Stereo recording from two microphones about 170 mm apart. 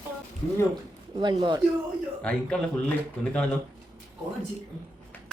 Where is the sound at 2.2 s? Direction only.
5° left (ahead or behind).